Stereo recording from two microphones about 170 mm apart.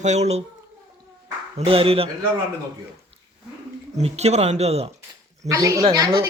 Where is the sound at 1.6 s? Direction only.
35° right (ahead or behind).